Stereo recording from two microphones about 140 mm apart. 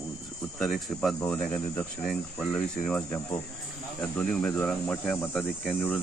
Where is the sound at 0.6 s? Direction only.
Centre (ahead or behind).